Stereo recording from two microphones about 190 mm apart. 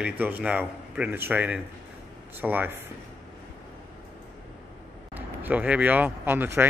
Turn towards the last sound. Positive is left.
turn(degrees=-10)  # may be behind; listen again after turning